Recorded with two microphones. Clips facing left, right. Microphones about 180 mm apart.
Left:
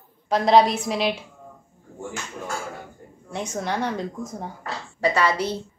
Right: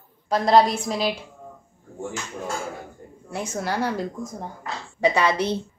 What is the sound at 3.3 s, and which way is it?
Speech, 5° right (ahead or behind).